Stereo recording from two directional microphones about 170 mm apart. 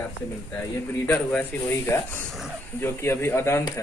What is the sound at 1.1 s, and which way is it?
Speech, 10° left (ahead or behind).